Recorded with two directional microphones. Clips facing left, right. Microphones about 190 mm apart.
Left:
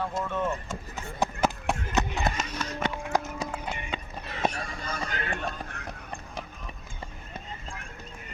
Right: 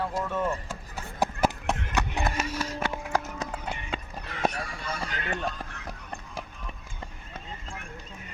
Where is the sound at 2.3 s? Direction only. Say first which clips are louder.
Right 2 dB; 10° right (ahead or behind).